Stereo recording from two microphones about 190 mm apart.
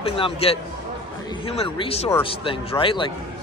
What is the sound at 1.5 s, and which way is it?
A man's voice, 30° left (ahead or behind).